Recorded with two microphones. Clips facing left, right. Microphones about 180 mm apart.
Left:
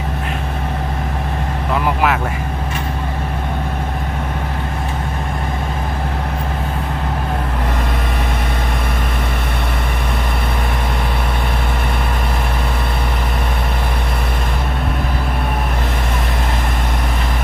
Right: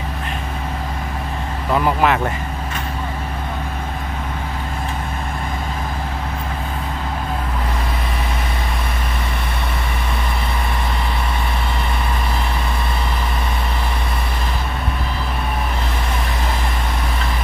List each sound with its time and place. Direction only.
1.7 s speech: 5° left (ahead or behind)